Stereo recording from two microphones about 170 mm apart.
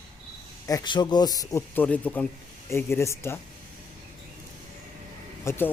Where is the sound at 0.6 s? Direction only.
25° left (ahead or behind).